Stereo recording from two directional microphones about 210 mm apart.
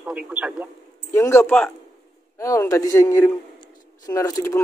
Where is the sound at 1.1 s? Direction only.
15° left (ahead or behind).